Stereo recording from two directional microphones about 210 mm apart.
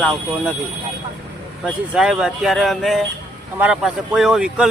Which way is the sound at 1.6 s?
5° right (ahead or behind).